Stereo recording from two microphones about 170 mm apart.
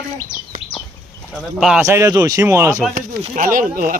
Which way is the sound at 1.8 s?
15° right (ahead or behind).